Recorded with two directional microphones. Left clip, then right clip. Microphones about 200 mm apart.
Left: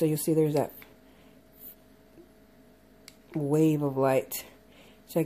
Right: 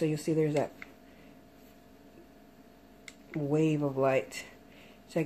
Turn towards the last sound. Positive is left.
turn(degrees=35)  # may be behind; listen again after turning